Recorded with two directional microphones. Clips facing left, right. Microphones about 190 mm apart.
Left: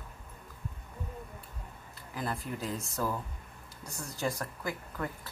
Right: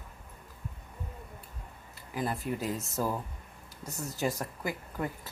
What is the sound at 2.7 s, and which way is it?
Speech, 20° right (ahead or behind).